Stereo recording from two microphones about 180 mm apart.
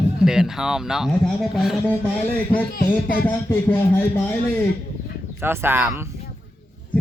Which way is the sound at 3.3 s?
10° left (ahead or behind).